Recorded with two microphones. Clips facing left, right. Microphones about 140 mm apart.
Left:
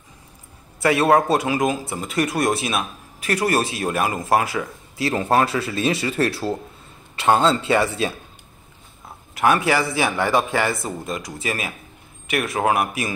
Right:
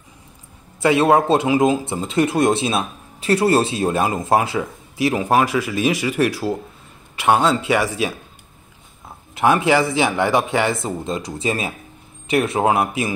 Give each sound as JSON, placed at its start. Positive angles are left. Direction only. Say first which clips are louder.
{"t": 0.8, "sound": "speech", "louder": "right 2 dB", "side_deg": -20}
{"t": 9.3, "sound": "speech", "louder": "right 3 dB", "side_deg": -20}